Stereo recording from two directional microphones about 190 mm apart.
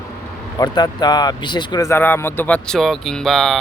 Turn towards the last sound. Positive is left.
turn(degrees=0)  # may be behind; listen again after turning